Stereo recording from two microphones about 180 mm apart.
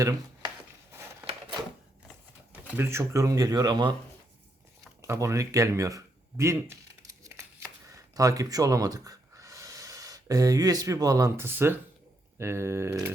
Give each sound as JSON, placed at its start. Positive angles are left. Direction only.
{"t": 2.6, "sound": "speech", "side_deg": -15}
{"t": 5.0, "sound": "speech", "side_deg": -15}
{"t": 7.9, "sound": "speech", "side_deg": -20}